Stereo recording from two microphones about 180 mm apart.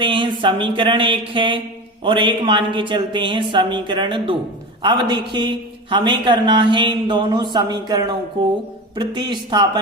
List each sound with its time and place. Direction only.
0.0 s a man's voice: 25° right (ahead or behind)
9.3 s a man's voice: 25° right (ahead or behind)